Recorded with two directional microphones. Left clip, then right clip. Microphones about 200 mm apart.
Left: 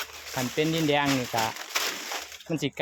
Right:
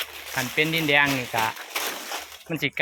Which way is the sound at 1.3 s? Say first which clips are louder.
Right 2 dB; 15° left (ahead or behind).